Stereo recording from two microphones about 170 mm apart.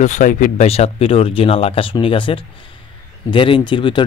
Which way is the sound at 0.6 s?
35° left (ahead or behind).